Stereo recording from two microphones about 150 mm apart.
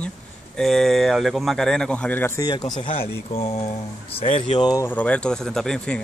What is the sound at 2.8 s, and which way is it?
Speech, 40° left (ahead or behind).